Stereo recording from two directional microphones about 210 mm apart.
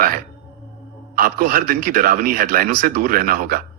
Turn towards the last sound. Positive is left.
turn(degrees=-40)  # may be behind; listen again after turning